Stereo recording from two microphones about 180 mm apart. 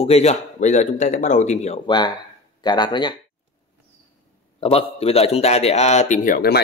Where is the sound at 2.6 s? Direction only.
25° left (ahead or behind).